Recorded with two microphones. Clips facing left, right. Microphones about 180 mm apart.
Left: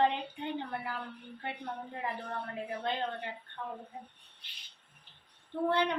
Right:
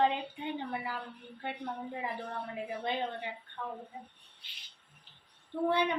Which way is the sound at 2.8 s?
10° right (ahead or behind).